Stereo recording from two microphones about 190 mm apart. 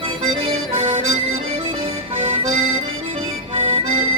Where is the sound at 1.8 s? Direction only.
30° right (ahead or behind).